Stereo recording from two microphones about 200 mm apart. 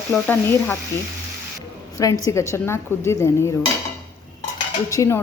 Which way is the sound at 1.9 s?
15° left (ahead or behind).